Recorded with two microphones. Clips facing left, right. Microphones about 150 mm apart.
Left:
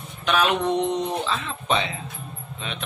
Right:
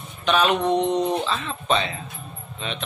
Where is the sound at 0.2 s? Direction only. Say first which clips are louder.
Right 2 dB; 5° left (ahead or behind).